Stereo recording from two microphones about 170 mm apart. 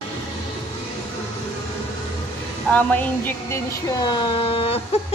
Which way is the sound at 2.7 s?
10° left (ahead or behind).